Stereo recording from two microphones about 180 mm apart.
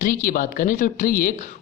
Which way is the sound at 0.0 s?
50° left (ahead or behind).